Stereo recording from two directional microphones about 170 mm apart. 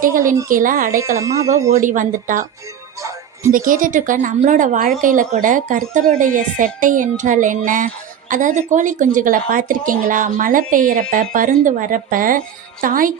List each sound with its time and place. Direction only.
0.0 s a woman's voice: 55° right (ahead or behind)
0.9 s speech: 15° right (ahead or behind)
1.7 s a woman's voice: 50° right (ahead or behind)
3.5 s a woman's voice: 55° right (ahead or behind)